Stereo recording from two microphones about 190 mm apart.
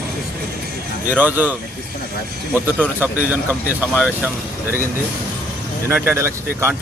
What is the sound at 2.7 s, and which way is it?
Speech, 10° right (ahead or behind).